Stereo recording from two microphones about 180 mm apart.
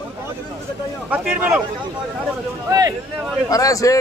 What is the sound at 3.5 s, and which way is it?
Speech, 20° left (ahead or behind).